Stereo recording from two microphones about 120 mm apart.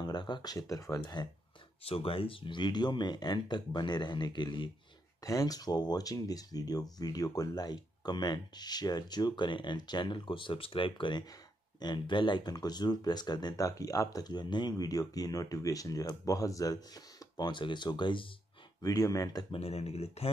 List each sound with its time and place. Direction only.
0.0 s speech: 40° left (ahead or behind)
1.9 s speech: 50° left (ahead or behind)
18.8 s speech: 30° left (ahead or behind)
19.5 s speech: 60° left (ahead or behind)